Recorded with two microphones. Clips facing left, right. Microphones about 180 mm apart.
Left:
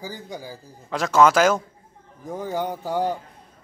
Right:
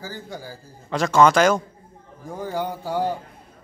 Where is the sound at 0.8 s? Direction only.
Centre (ahead or behind).